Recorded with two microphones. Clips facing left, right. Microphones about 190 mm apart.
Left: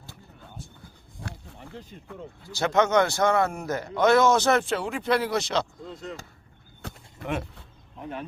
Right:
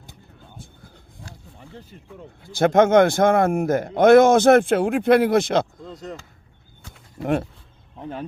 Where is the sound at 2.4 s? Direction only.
55° right (ahead or behind).